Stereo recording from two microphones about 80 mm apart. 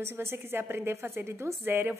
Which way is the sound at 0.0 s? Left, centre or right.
Right.